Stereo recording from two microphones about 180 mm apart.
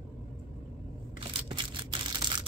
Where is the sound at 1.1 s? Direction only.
30° right (ahead or behind).